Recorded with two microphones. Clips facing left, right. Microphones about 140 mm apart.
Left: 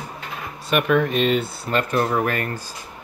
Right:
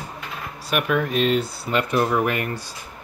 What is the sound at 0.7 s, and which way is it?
Speech, centre (ahead or behind).